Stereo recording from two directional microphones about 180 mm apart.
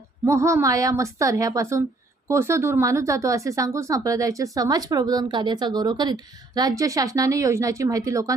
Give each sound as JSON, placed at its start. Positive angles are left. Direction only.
{"t": 0.3, "sound": "speech", "side_deg": -15}